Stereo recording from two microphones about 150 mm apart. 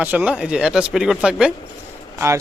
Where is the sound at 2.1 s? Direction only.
20° right (ahead or behind).